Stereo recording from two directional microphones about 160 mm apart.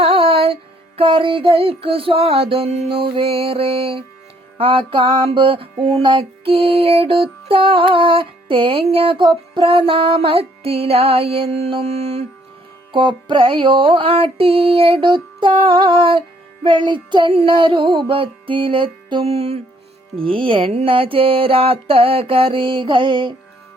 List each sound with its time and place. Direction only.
0.0 s music: 35° right (ahead or behind)
12.9 s music: 30° right (ahead or behind)